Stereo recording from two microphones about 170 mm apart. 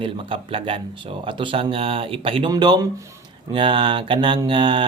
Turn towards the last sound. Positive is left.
turn(degrees=-25)  # may be behind; listen again after turning